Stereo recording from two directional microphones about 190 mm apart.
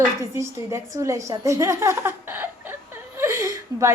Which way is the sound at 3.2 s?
15° right (ahead or behind).